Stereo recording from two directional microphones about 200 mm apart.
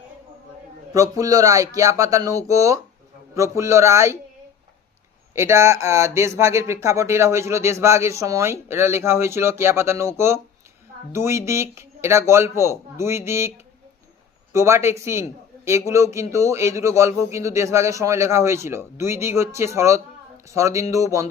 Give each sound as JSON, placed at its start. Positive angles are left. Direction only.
{"t": 0.9, "sound": "a man's voice", "side_deg": -15}
{"t": 5.3, "sound": "a man's voice", "side_deg": -15}
{"t": 14.5, "sound": "a man's voice", "side_deg": -15}